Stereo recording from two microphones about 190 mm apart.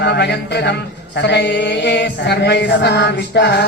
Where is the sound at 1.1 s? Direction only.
65° left (ahead or behind).